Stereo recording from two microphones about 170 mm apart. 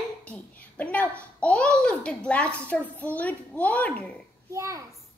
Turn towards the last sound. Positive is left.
turn(degrees=-20)  # may be behind; listen again after turning